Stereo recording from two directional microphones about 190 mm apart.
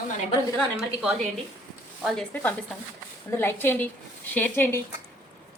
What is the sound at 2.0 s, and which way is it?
A woman's voice, centre (ahead or behind).